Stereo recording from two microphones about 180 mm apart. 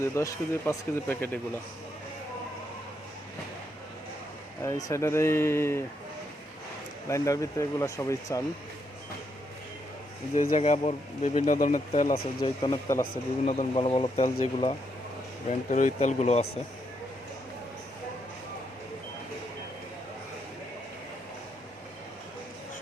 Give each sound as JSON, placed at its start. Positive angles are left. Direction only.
{"t": 0.1, "sound": "speech", "side_deg": 15}
{"t": 4.6, "sound": "speech", "side_deg": 15}
{"t": 7.1, "sound": "speech", "side_deg": 20}
{"t": 10.3, "sound": "speech", "side_deg": 40}
{"t": 12.4, "sound": "speech", "side_deg": 25}
{"t": 13.0, "sound": "speech", "side_deg": 40}
{"t": 15.4, "sound": "speech", "side_deg": 40}